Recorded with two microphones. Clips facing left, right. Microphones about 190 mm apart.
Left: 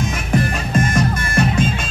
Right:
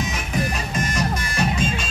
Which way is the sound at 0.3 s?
55° left (ahead or behind).